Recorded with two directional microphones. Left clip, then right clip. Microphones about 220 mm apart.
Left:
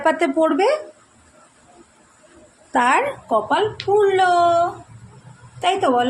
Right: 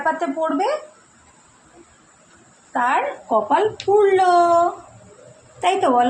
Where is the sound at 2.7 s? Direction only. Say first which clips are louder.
Left 3 dB; 50° left (ahead or behind).